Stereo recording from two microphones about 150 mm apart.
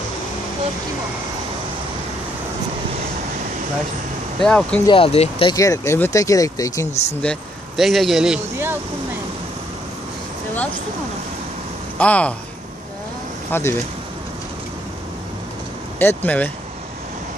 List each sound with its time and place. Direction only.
4.4 s speech: 5° left (ahead or behind)
4.8 s speech: 35° left (ahead or behind)
5.5 s speech: 20° left (ahead or behind)
6.9 s speech: 45° left (ahead or behind)
7.2 s speech: 5° left (ahead or behind)
12.0 s speech: 10° left (ahead or behind)
13.5 s speech: 15° left (ahead or behind)
16.0 s speech: 15° left (ahead or behind)